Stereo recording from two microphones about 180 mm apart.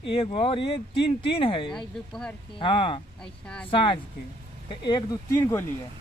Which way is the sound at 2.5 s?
30° left (ahead or behind).